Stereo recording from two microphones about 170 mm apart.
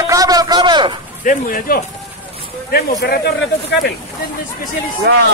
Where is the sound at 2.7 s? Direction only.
65° left (ahead or behind).